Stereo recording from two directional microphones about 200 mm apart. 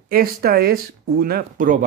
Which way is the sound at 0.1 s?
50° right (ahead or behind).